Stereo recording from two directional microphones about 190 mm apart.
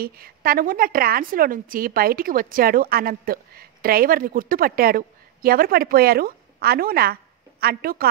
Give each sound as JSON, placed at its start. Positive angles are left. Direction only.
{"t": 0.0, "sound": "a woman's voice", "side_deg": -50}